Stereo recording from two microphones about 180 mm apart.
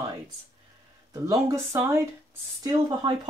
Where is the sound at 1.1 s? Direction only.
15° right (ahead or behind).